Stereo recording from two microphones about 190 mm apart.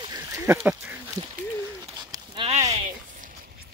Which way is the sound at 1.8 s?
20° right (ahead or behind).